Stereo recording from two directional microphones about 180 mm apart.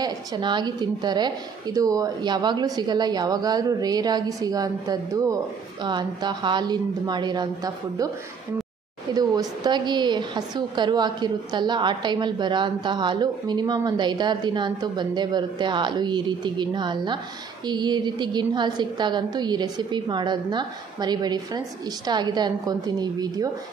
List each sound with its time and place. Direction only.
0.0 s a woman's voice: 25° right (ahead or behind)
9.1 s a woman's voice: 20° right (ahead or behind)